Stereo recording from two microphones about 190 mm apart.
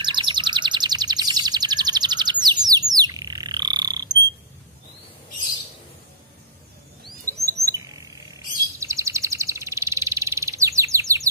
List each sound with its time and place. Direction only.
0.0 s chirp: 25° right (ahead or behind)
2.4 s bird: 20° right (ahead or behind)
7.4 s chirp: 15° right (ahead or behind)
8.7 s bird: 15° right (ahead or behind)